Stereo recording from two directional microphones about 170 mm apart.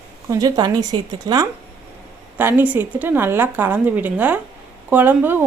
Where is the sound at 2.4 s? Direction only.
10° right (ahead or behind).